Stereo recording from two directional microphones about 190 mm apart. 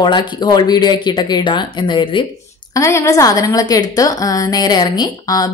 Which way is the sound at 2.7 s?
15° left (ahead or behind).